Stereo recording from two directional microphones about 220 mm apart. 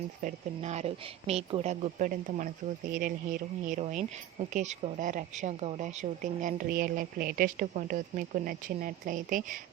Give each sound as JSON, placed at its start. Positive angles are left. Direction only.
{"t": 0.2, "sound": "a woman's voice", "side_deg": -35}